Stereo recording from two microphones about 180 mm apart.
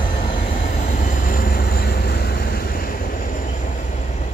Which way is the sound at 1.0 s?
50° left (ahead or behind).